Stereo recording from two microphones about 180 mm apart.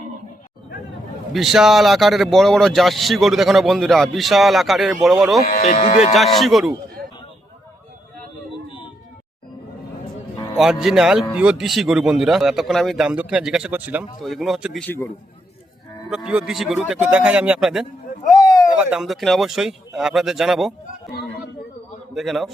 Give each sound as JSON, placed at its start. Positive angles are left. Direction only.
{"t": 1.3, "sound": "speech", "side_deg": 0}
{"t": 5.5, "sound": "speech", "side_deg": 45}
{"t": 6.1, "sound": "speech", "side_deg": 0}
{"t": 10.6, "sound": "speech", "side_deg": 0}
{"t": 14.8, "sound": "a man's voice", "side_deg": 15}
{"t": 16.0, "sound": "speech", "side_deg": -5}
{"t": 22.1, "sound": "speech", "side_deg": 0}